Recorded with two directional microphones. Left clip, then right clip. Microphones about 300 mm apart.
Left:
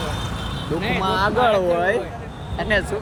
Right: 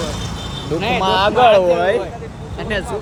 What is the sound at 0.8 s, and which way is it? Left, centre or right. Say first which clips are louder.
Speech: right 5 dB; centre.